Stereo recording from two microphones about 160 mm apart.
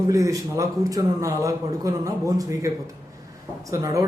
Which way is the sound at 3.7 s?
20° right (ahead or behind).